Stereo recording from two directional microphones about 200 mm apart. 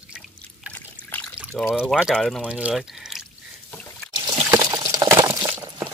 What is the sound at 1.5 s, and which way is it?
Speech, 5° left (ahead or behind).